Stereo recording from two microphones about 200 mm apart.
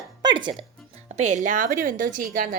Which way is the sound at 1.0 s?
35° right (ahead or behind).